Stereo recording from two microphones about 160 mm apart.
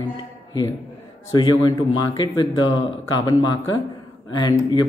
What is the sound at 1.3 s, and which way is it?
A man's voice, 25° left (ahead or behind).